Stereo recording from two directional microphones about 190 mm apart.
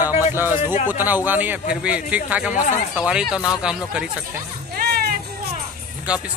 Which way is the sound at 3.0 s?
5° right (ahead or behind).